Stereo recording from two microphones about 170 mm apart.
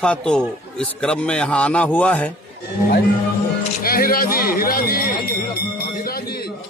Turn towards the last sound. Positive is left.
turn(degrees=70)  # may be behind; listen again after turning